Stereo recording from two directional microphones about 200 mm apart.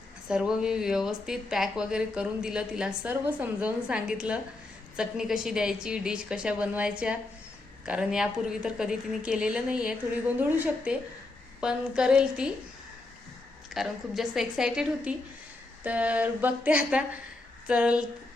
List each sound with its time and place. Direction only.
0.3 s a woman's voice: 5° right (ahead or behind)
13.7 s a woman's voice: centre (ahead or behind)
15.8 s a sound: 5° right (ahead or behind)
17.7 s a woman's voice: 5° right (ahead or behind)